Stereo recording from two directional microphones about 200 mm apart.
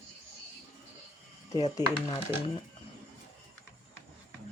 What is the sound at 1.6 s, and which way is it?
Speech, 20° left (ahead or behind).